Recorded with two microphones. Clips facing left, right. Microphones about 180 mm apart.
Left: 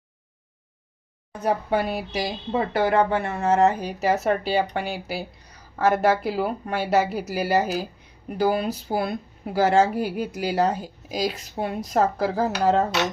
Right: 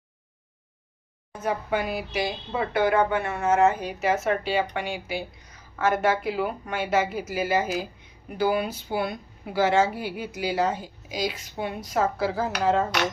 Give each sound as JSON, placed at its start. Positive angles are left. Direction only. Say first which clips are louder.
{"t": 1.4, "sound": "a woman's voice", "louder": "left 4 dB", "side_deg": 35}